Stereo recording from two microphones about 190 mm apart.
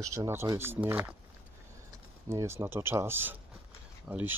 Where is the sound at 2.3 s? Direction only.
15° right (ahead or behind).